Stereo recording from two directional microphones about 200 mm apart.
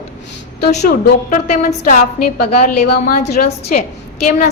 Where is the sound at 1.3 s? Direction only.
40° left (ahead or behind).